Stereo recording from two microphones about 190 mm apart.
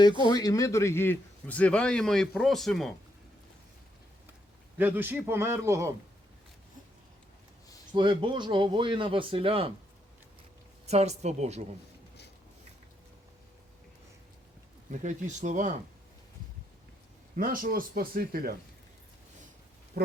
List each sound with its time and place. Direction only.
0.0 s a man's voice: 25° left (ahead or behind); by 2.9 s centre (ahead or behind)
4.8 s a man's voice: 10° right (ahead or behind)
7.9 s speech: 25° right (ahead or behind)
10.8 s speech: 35° right (ahead or behind)
14.8 s speech: 40° right (ahead or behind)
17.3 s speech: 45° right (ahead or behind)